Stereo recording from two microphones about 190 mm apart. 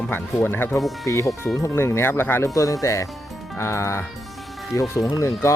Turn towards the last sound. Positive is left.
turn(degrees=15)  # may be behind; listen again after turning